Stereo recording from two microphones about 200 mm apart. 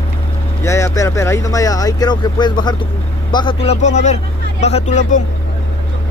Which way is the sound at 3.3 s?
25° left (ahead or behind).